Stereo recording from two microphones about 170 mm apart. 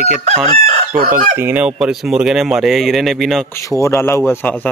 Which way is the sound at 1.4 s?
10° right (ahead or behind).